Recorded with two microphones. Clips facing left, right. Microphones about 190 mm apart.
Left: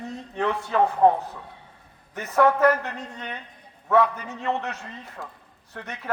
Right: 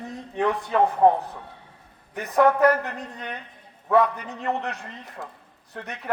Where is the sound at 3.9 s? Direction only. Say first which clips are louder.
Even; 15° right (ahead or behind).